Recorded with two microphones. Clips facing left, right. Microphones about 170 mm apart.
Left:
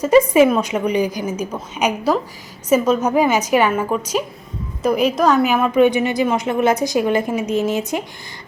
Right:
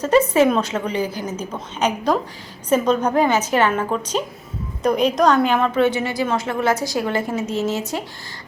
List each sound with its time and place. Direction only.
0.0 s a woman's voice: 10° left (ahead or behind)